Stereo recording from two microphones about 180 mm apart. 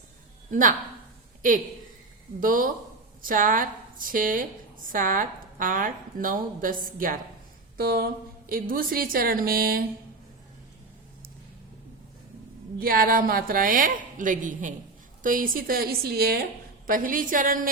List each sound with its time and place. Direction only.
0.5 s a woman's voice: 45° right (ahead or behind)
12.8 s a woman's voice: 55° right (ahead or behind)